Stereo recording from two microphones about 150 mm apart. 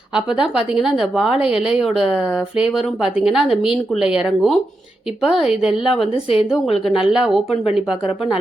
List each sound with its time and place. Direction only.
0.4 s a woman's voice: 5° right (ahead or behind)
6.8 s a woman's voice: 5° right (ahead or behind)
7.5 s speech: 45° left (ahead or behind)